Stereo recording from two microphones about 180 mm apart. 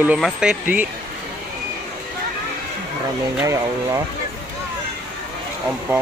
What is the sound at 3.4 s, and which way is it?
Speech, 20° right (ahead or behind).